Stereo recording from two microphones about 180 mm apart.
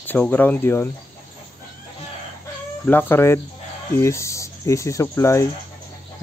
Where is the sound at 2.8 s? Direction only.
10° left (ahead or behind).